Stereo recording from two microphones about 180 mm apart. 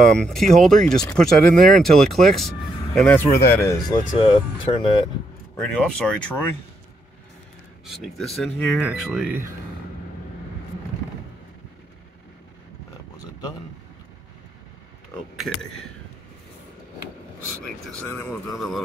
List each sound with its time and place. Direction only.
0.0 s speech: centre (ahead or behind)
4.2 s speech: 30° left (ahead or behind)
5.6 s speech: 5° left (ahead or behind)
7.8 s speech: centre (ahead or behind)
15.3 s speech: centre (ahead or behind)
18.0 s speech: 15° left (ahead or behind)
18.5 s speech: centre (ahead or behind)